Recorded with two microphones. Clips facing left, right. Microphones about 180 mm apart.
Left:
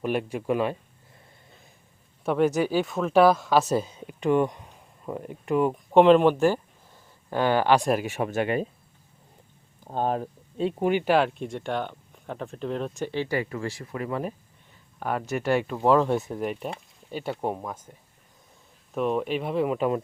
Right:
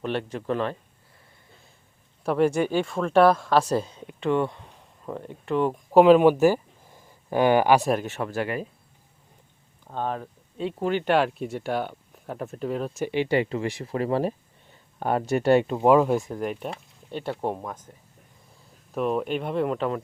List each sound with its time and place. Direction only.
0.0 s speech: 10° left (ahead or behind)
2.2 s speech: centre (ahead or behind)
7.9 s speech: 10° left (ahead or behind)
9.8 s speech: 40° left (ahead or behind)
10.8 s speech: 10° left (ahead or behind)
11.1 s speech: centre (ahead or behind)
13.1 s speech: 20° right (ahead or behind)
13.9 s speech: 30° right (ahead or behind); by 16.1 s 10° right (ahead or behind)
16.1 s speech: centre (ahead or behind)
18.9 s speech: centre (ahead or behind)